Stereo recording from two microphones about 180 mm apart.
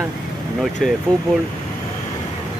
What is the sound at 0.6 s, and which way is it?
Speech, centre (ahead or behind).